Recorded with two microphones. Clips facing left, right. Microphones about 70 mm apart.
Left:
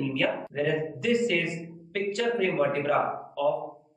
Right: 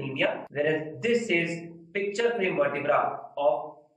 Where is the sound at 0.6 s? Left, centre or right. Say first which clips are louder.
Right 1 dB; right.